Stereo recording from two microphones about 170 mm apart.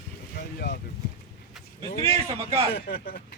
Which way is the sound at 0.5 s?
75° left (ahead or behind).